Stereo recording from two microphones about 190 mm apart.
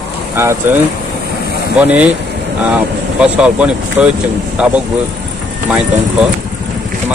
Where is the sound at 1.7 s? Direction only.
10° right (ahead or behind).